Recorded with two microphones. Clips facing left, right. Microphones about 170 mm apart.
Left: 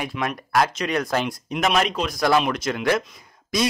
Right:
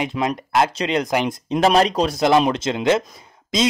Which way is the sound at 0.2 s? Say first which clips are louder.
Right 2 dB; 30° right (ahead or behind).